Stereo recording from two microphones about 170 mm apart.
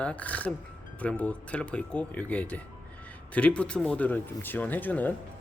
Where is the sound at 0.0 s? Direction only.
10° left (ahead or behind).